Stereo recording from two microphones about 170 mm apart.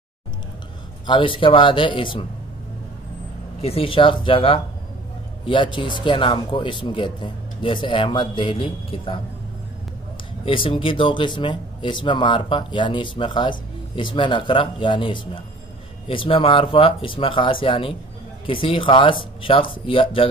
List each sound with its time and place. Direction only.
1.0 s speech: 30° left (ahead or behind)
3.6 s speech: 35° left (ahead or behind)
10.4 s speech: 30° left (ahead or behind)